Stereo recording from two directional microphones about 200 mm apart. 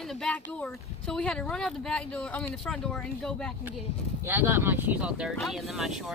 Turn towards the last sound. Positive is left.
turn(degrees=0)  # may be behind; listen again after turning